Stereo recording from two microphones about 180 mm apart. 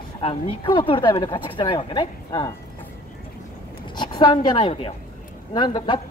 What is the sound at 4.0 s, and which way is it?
Speech, 25° left (ahead or behind).